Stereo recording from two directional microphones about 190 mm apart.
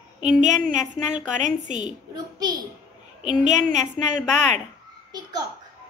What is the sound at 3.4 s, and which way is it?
Speech, 40° right (ahead or behind).